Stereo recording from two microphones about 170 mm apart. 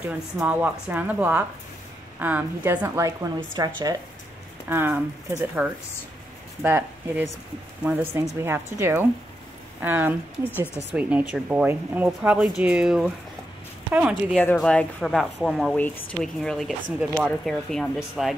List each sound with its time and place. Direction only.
0.4 s speech: 5° right (ahead or behind)
14.3 s speech: 5° left (ahead or behind)